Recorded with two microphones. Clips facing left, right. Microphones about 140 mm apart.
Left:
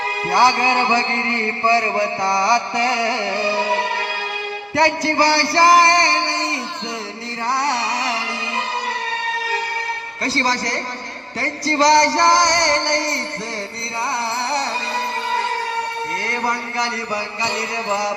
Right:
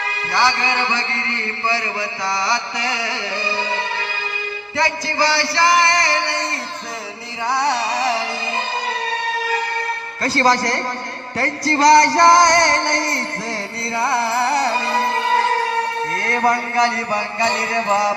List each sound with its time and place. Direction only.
0.3 s a man's voice: 50° left (ahead or behind)
4.8 s a man's voice: 60° left (ahead or behind); by 6.2 s 30° left (ahead or behind)
7.6 s music: 20° right (ahead or behind)
10.2 s a sound: 50° right (ahead or behind)
14.0 s music: 50° right (ahead or behind)
16.2 s a sound: 50° right (ahead or behind)